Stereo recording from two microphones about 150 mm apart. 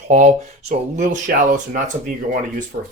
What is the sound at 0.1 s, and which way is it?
Speech, 55° right (ahead or behind).